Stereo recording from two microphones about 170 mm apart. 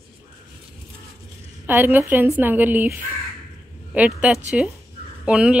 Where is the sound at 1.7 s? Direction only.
10° right (ahead or behind).